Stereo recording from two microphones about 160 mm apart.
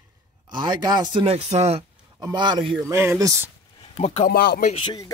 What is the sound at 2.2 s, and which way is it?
Speech, 30° right (ahead or behind).